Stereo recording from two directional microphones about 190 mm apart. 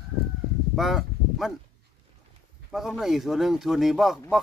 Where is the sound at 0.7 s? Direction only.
Centre (ahead or behind).